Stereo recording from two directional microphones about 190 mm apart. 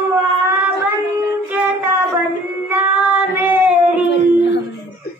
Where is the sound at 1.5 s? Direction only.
10° right (ahead or behind).